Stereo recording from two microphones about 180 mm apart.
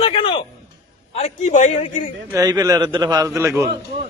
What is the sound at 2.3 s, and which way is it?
A man's voice, 20° right (ahead or behind).